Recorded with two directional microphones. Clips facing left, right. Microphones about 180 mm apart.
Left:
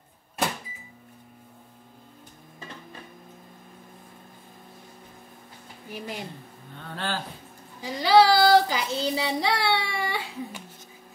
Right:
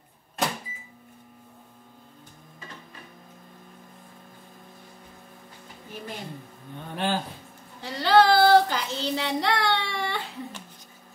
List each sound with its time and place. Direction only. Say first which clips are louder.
5.9 s a woman's voice: left 2 dB; 10° left (ahead or behind)
6.8 s speech: right 4 dB; 15° right (ahead or behind)
7.8 s child singing: left 1 dB; 10° left (ahead or behind)